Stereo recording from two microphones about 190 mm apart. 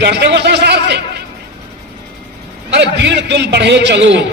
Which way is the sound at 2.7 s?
60° right (ahead or behind).